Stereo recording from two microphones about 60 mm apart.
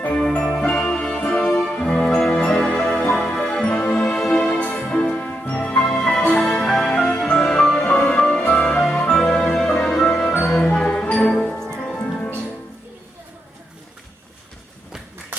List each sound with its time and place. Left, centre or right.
0.1 s jingle bell: centre
0.4 s music: centre
2.0 s music: centre; by 4.8 s left
4.8 s music: centre
5.1 s music: left
5.8 s music: centre